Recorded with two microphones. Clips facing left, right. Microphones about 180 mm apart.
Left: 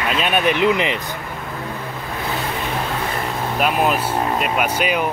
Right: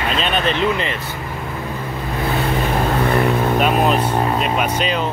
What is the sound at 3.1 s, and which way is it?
Vehicle, 60° right (ahead or behind).